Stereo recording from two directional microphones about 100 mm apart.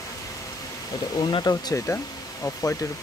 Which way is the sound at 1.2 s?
55° left (ahead or behind).